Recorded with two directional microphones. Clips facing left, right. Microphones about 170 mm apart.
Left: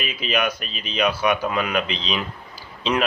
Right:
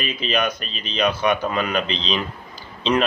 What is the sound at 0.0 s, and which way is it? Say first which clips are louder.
A man's voice: right 1 dB; 5° left (ahead or behind).